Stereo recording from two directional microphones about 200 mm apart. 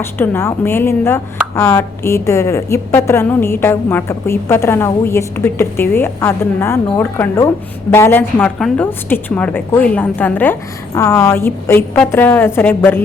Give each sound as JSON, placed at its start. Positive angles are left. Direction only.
{"t": 0.0, "sound": "speech", "side_deg": 10}